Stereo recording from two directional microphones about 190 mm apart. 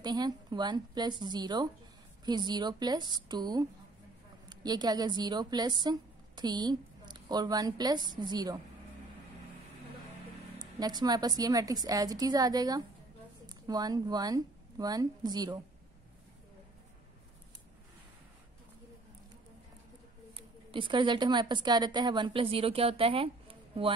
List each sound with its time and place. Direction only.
0.0 s a woman's voice: 20° right (ahead or behind)
10.6 s a woman's voice: 20° right (ahead or behind)
20.3 s a woman's voice: 25° right (ahead or behind)